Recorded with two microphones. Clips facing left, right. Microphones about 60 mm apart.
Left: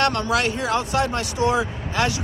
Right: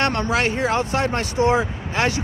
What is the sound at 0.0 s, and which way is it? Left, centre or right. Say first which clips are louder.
Speech: even; right.